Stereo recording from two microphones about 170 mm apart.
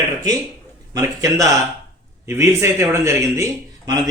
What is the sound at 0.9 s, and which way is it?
Speech, 20° right (ahead or behind).